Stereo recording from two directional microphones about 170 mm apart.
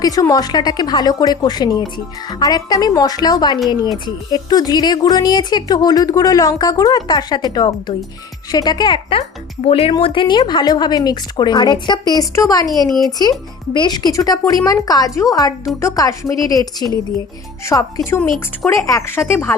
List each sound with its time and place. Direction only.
0.0 s a woman's voice: 20° left (ahead or behind)